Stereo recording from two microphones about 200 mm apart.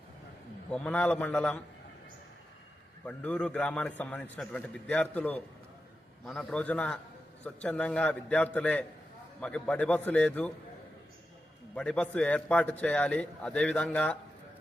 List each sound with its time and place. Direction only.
0.7 s a man's voice: 5° left (ahead or behind)
3.1 s a man's voice: 5° left (ahead or behind)
11.7 s speech: 5° left (ahead or behind)